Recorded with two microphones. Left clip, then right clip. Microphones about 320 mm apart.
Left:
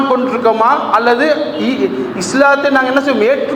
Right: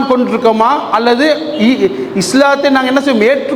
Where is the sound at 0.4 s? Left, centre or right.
Right.